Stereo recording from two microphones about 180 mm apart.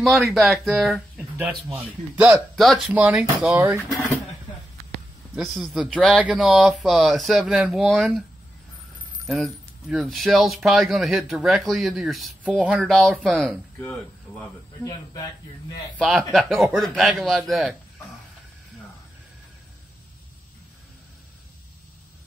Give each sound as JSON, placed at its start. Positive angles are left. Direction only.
{"t": 0.0, "sound": "speech", "side_deg": 0}
{"t": 3.9, "sound": "speech", "side_deg": 10}
{"t": 5.3, "sound": "speech", "side_deg": 0}
{"t": 14.8, "sound": "speech", "side_deg": 20}
{"t": 16.0, "sound": "speech", "side_deg": 5}